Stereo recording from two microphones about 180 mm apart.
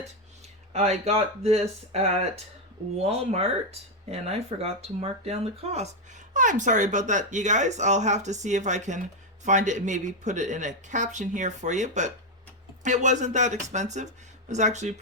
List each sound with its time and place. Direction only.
0.7 s speech: 35° right (ahead or behind)